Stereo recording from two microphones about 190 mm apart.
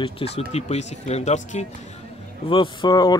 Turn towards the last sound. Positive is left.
turn(degrees=20)  # may be behind; listen again after turning